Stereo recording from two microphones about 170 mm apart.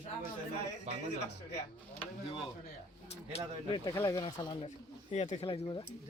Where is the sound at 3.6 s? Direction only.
25° left (ahead or behind).